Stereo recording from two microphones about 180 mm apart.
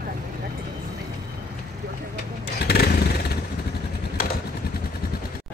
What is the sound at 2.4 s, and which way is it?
Motorcycle, 65° left (ahead or behind).